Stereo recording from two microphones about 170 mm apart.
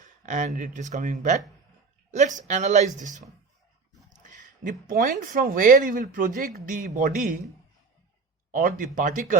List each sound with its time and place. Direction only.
0.2 s speech: 45° right (ahead or behind)
8.5 s speech: 55° right (ahead or behind)